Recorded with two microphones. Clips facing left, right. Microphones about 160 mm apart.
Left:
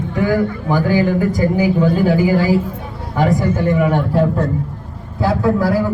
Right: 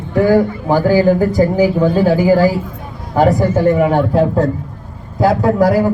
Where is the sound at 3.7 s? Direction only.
30° right (ahead or behind).